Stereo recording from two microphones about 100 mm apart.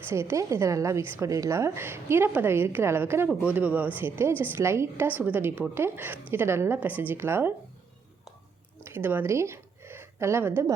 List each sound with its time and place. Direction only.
0.1 s a woman's voice: 30° right (ahead or behind)
3.2 s a woman's voice: 10° right (ahead or behind)
8.8 s a sound: 25° right (ahead or behind)